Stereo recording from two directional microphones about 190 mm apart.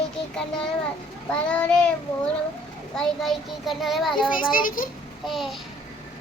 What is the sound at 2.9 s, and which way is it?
A child's voice, centre (ahead or behind).